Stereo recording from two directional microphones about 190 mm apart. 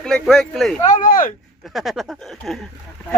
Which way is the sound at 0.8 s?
45° left (ahead or behind).